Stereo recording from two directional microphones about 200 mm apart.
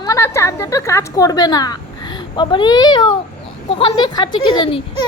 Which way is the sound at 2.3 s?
20° left (ahead or behind).